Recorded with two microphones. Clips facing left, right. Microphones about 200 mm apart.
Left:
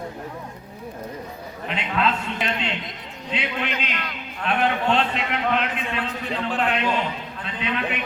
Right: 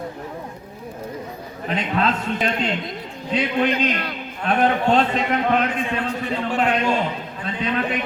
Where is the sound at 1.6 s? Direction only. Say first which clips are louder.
Right 4 dB; 40° right (ahead or behind).